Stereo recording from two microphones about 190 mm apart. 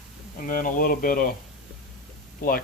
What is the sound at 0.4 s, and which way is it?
Speech, 45° left (ahead or behind).